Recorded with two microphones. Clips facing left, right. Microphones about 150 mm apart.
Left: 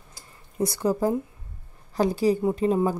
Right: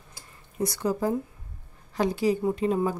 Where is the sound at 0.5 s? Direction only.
30° left (ahead or behind).